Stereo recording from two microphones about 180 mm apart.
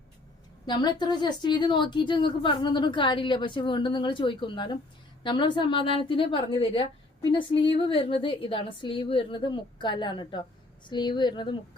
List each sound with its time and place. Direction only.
0.6 s speech: 25° left (ahead or behind)